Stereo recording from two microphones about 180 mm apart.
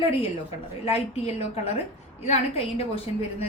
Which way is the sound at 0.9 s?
35° left (ahead or behind).